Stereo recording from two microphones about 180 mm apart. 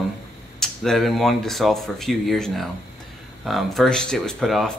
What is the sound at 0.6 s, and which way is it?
Speech, centre (ahead or behind).